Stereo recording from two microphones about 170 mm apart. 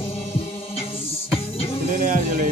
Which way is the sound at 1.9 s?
55° right (ahead or behind).